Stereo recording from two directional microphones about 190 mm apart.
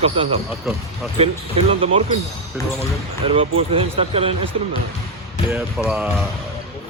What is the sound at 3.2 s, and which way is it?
Speech, 30° right (ahead or behind).